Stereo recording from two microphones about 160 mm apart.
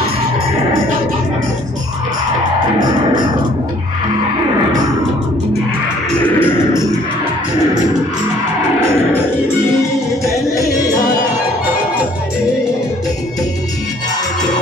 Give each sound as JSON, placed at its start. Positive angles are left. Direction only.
{"t": 6.4, "sound": "music", "side_deg": 15}